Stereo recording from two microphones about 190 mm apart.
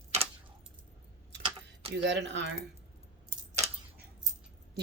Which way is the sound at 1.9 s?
65° right (ahead or behind).